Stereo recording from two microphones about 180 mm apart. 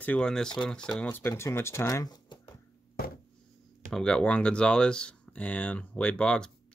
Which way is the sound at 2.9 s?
55° left (ahead or behind).